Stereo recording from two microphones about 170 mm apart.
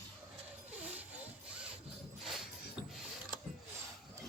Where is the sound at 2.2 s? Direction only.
Centre (ahead or behind).